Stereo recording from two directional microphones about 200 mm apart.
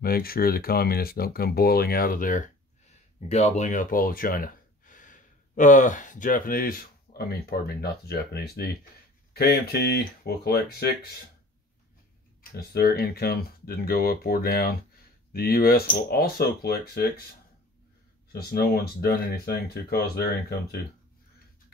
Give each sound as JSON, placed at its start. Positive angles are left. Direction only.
{"t": 0.0, "sound": "speech", "side_deg": 50}
{"t": 12.5, "sound": "speech", "side_deg": 50}
{"t": 18.3, "sound": "speech", "side_deg": 50}